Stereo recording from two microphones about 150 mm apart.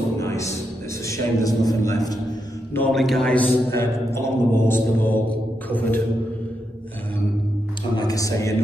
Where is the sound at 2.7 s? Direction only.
5° left (ahead or behind).